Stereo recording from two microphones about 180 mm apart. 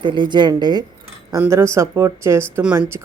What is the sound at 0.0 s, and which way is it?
Speech, 25° right (ahead or behind).